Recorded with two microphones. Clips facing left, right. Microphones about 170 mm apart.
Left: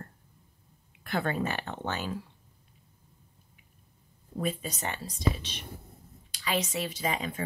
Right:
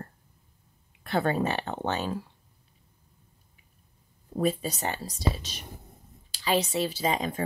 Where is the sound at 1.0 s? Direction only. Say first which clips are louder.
Right 4 dB; 30° right (ahead or behind).